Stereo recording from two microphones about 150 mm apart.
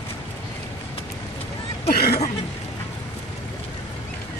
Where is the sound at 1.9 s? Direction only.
90° left.